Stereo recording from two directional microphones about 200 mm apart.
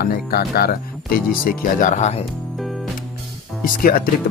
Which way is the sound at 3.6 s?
45° left (ahead or behind).